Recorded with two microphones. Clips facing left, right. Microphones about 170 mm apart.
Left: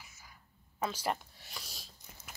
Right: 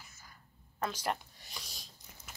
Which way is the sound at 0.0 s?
5° left (ahead or behind).